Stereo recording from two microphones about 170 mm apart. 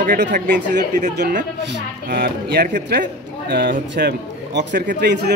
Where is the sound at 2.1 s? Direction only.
65° right (ahead or behind).